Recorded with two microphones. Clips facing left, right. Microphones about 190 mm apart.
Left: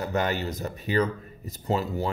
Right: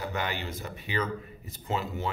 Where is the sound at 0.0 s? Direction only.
40° left (ahead or behind).